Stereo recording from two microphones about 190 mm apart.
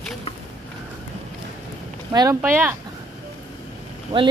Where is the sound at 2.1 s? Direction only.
20° right (ahead or behind).